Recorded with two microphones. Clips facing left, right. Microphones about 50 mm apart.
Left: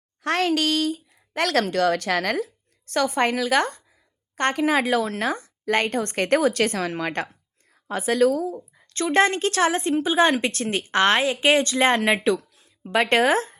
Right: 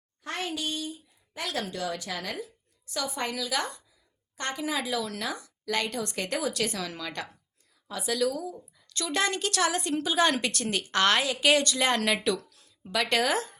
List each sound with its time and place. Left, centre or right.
0.2 s a woman's voice: left